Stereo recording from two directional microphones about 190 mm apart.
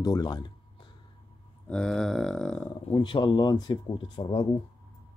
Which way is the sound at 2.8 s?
25° left (ahead or behind).